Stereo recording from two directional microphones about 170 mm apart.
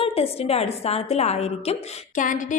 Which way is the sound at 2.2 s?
50° left (ahead or behind).